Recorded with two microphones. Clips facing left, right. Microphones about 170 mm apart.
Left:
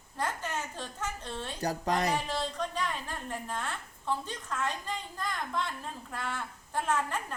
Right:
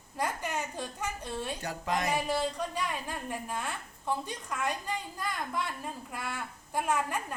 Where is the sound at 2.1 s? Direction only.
10° right (ahead or behind).